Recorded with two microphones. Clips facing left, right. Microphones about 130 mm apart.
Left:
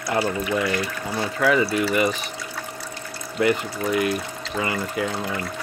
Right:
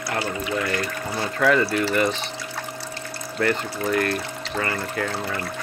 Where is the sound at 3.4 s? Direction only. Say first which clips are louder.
Left 2 dB; 15° left (ahead or behind).